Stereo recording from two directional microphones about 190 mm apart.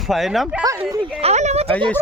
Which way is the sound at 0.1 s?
Centre (ahead or behind).